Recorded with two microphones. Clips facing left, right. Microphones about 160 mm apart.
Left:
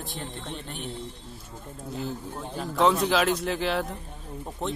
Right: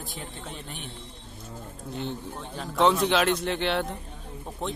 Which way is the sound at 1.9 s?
5° left (ahead or behind).